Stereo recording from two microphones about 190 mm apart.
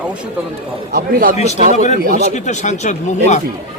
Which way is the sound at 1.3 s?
35° left (ahead or behind).